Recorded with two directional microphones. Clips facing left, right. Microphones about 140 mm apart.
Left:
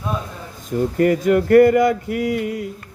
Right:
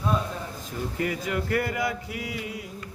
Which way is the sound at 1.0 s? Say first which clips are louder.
Left 13 dB; 50° left (ahead or behind).